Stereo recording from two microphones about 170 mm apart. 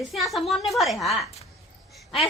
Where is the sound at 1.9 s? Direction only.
Centre (ahead or behind).